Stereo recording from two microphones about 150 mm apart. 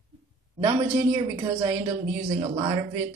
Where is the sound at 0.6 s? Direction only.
30° right (ahead or behind).